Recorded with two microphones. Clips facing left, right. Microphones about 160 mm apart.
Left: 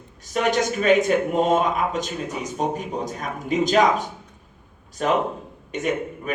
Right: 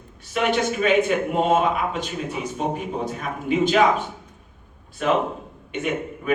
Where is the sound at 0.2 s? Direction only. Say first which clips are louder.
Even; 40° left (ahead or behind).